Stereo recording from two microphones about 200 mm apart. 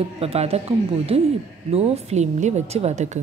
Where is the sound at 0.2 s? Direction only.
30° right (ahead or behind).